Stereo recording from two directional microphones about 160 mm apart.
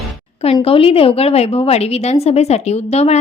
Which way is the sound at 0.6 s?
35° left (ahead or behind).